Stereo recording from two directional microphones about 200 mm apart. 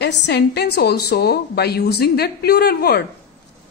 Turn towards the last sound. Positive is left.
turn(degrees=50)  # may be behind; listen again after turning